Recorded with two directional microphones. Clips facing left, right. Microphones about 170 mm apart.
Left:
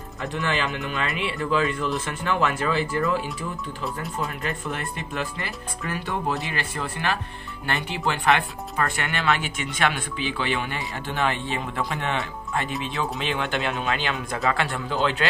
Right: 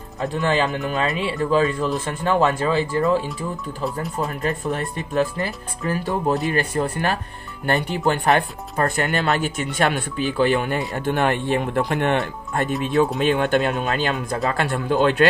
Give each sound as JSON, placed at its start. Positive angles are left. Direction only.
{"t": 0.3, "sound": "speech", "side_deg": -35}
{"t": 4.3, "sound": "speech", "side_deg": -40}